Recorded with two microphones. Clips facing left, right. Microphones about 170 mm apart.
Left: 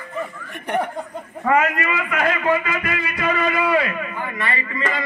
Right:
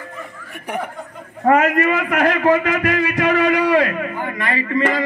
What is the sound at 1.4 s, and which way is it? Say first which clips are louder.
A man's voice: right 5 dB; 45° right (ahead or behind).